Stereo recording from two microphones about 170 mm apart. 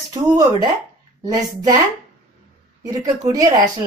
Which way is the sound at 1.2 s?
20° right (ahead or behind).